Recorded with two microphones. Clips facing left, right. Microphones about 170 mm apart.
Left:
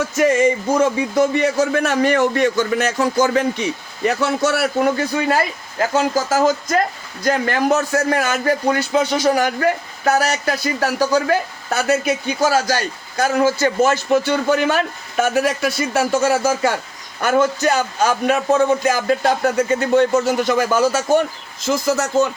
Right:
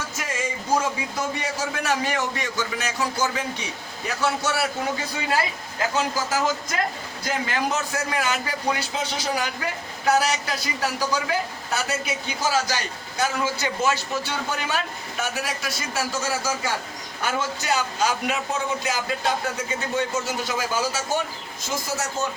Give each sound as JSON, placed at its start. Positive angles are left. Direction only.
{"t": 0.2, "sound": "a man's voice", "side_deg": 65}
{"t": 6.1, "sound": "a man's voice", "side_deg": 45}
{"t": 12.4, "sound": "a man's voice", "side_deg": 45}
{"t": 21.7, "sound": "speech", "side_deg": 80}